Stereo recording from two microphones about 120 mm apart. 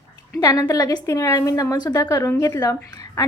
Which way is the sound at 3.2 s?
30° left (ahead or behind).